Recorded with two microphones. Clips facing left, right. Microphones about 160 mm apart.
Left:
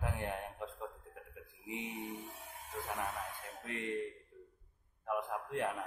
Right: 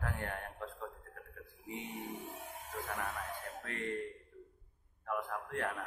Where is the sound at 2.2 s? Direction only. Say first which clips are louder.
Right 3 dB; 85° right.